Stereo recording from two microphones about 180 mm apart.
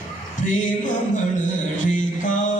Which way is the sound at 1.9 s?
45° left (ahead or behind).